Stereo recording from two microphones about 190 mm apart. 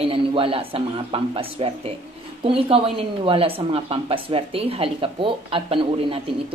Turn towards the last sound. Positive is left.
turn(degrees=-30)  # may be behind; listen again after turning